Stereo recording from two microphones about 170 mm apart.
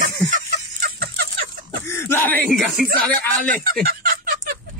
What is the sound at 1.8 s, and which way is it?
Speech, 15° left (ahead or behind).